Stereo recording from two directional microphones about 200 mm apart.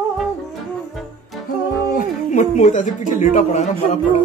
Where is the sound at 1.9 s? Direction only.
35° left (ahead or behind).